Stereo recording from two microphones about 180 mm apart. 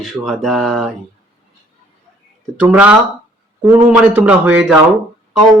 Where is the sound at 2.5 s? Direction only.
5° right (ahead or behind).